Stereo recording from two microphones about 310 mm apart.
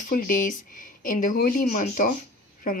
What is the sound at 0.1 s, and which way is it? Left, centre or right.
A woman's voice, left.